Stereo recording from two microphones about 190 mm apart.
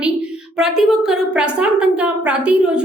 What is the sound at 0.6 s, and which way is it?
A woman's voice, centre (ahead or behind).